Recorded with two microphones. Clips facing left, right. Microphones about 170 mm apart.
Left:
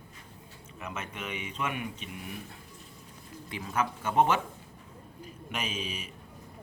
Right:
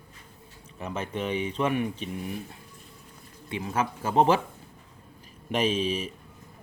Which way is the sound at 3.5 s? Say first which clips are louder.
Right 3 dB; 25° right (ahead or behind).